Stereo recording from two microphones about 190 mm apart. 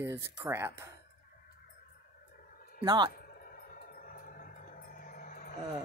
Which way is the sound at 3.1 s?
50° left (ahead or behind).